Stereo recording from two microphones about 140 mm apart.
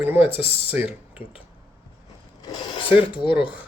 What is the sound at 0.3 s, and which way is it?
Speech, 40° left (ahead or behind).